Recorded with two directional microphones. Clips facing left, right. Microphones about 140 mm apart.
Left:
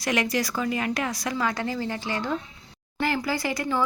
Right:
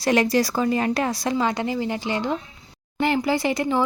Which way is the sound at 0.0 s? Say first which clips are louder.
Right 6 dB; 30° right (ahead or behind).